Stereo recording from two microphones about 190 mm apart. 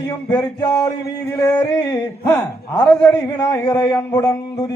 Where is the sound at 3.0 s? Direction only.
15° left (ahead or behind).